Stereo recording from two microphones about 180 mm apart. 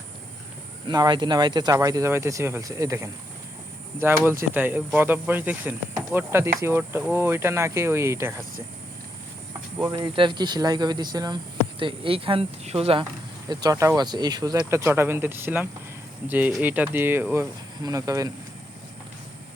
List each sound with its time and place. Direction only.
0.9 s speech: 25° right (ahead or behind)
4.2 s speech: 10° right (ahead or behind)
9.7 s speech: 20° right (ahead or behind)